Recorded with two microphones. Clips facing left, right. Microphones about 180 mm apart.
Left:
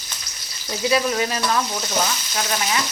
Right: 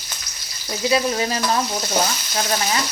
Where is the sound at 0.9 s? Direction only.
30° right (ahead or behind).